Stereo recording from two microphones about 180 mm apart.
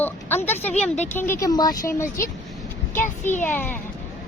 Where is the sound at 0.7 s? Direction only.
40° left (ahead or behind).